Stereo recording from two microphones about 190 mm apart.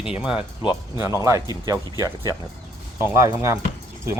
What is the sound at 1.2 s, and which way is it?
Speech, 15° right (ahead or behind).